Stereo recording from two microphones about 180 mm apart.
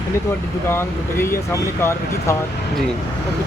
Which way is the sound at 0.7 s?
15° left (ahead or behind).